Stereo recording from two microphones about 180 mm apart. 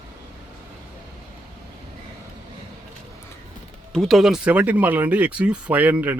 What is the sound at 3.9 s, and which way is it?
Speech, centre (ahead or behind).